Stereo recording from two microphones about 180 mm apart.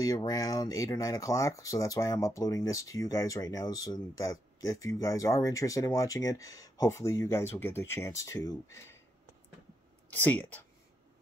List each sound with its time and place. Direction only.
0.0 s speech: 20° left (ahead or behind)
10.0 s speech: 10° left (ahead or behind)